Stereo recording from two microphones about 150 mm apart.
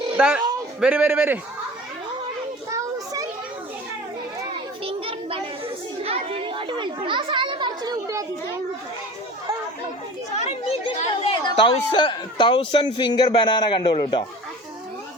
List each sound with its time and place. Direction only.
0.2 s a man's voice: 10° right (ahead or behind)
2.6 s children playing: 20° right (ahead or behind)
4.8 s children playing: 40° right (ahead or behind)
10.3 s chatter: 45° left (ahead or behind)
11.4 s a man's voice: 35° left (ahead or behind)